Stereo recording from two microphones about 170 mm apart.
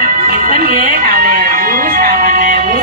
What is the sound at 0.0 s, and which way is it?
Music, 60° right (ahead or behind).